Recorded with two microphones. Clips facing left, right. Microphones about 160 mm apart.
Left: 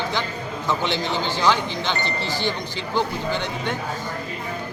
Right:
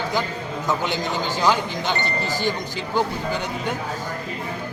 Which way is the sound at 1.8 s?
45° right (ahead or behind).